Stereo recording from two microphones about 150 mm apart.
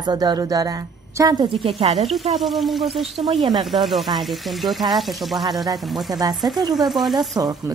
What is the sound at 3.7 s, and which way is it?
Speech, centre (ahead or behind).